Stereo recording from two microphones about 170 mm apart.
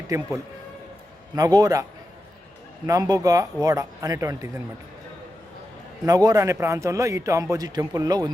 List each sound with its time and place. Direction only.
0.1 s speech: 20° right (ahead or behind)
1.4 s speech: 20° right (ahead or behind)
2.8 s speech: 20° right (ahead or behind)
6.1 s speech: 20° right (ahead or behind)